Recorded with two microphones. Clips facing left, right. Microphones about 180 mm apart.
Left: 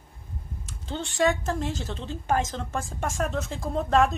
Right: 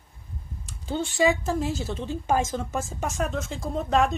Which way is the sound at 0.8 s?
5° right (ahead or behind).